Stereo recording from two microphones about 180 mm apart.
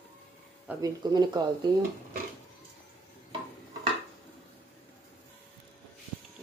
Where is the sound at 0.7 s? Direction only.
20° right (ahead or behind).